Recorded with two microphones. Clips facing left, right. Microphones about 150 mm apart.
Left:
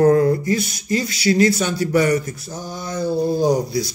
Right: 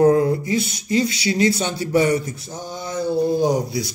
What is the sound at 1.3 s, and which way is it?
A man's voice, 30° right (ahead or behind).